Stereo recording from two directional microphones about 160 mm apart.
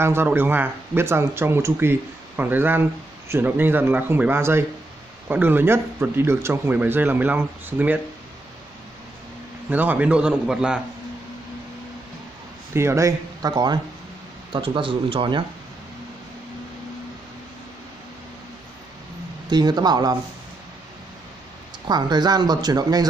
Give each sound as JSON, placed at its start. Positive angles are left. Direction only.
{"t": 0.0, "sound": "speech", "side_deg": -15}
{"t": 9.7, "sound": "speech", "side_deg": -10}
{"t": 12.7, "sound": "speech", "side_deg": -15}
{"t": 19.5, "sound": "speech", "side_deg": -25}
{"t": 21.8, "sound": "speech", "side_deg": -25}